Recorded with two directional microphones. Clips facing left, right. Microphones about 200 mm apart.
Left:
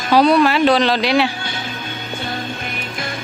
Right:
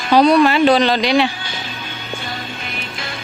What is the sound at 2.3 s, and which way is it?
Music, 50° left (ahead or behind).